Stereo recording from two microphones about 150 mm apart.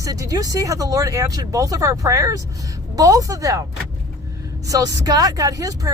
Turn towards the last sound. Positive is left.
turn(degrees=-25)  # may be behind; listen again after turning